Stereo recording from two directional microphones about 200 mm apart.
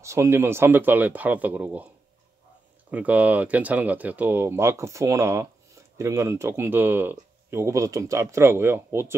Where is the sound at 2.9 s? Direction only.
10° right (ahead or behind).